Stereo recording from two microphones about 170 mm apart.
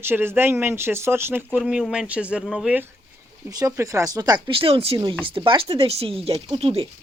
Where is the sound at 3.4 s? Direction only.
20° right (ahead or behind); by 6.8 s 35° right (ahead or behind).